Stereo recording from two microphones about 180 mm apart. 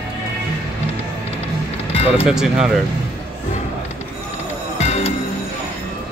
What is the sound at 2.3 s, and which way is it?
Speech, 5° right (ahead or behind).